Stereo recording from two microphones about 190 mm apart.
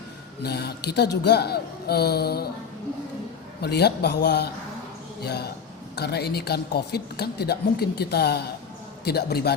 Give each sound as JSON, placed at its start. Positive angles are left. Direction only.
{"t": 0.4, "sound": "a woman's voice", "side_deg": 60}
{"t": 3.6, "sound": "a woman's voice", "side_deg": 60}